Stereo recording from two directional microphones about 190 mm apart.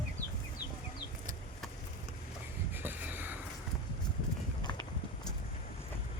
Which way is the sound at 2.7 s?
10° right (ahead or behind).